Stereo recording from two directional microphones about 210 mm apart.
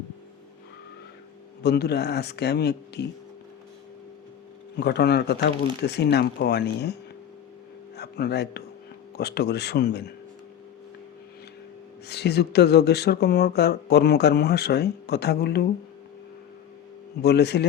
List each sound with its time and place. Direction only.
1.6 s speech: 50° left (ahead or behind)
4.8 s speech: 50° left (ahead or behind)
7.9 s speech: 50° left (ahead or behind)
12.0 s speech: 50° left (ahead or behind)
17.2 s speech: 50° left (ahead or behind)